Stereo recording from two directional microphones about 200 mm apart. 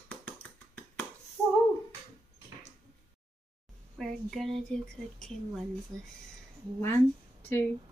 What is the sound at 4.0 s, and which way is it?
Speech, centre (ahead or behind).